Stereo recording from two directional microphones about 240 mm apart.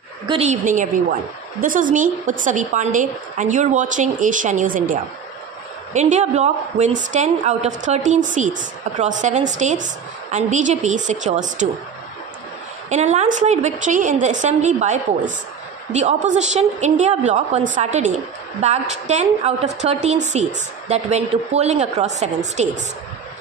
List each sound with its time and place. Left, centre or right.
0.3 s a woman's voice: right
5.9 s a woman's voice: right
12.9 s a woman's voice: right